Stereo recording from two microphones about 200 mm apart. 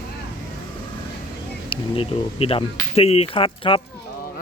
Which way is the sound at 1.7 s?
30° left (ahead or behind).